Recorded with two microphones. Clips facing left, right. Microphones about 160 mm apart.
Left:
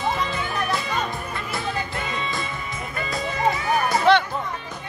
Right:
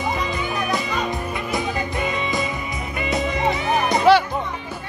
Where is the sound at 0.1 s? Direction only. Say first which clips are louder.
Right 2 dB; 15° right (ahead or behind).